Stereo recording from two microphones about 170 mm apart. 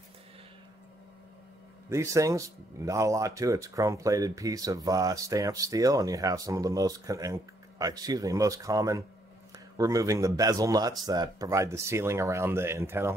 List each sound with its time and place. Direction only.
1.9 s speech: 15° right (ahead or behind)